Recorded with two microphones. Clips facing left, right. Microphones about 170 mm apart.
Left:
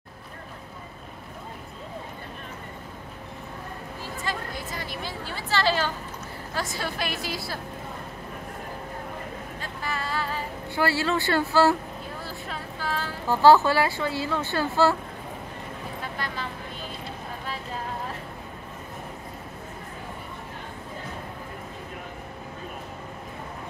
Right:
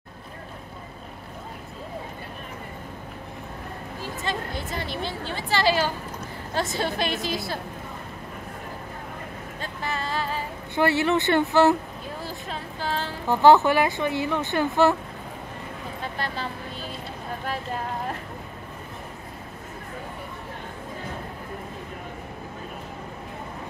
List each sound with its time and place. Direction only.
4.2 s a woman's voice: 25° right (ahead or behind)
6.5 s a woman's voice: 25° right (ahead or behind)
9.6 s vehicle: 20° right (ahead or behind)
10.7 s a woman's voice: 20° right (ahead or behind)